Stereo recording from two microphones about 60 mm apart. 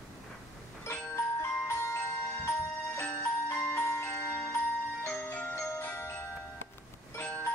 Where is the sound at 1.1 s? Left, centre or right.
Left.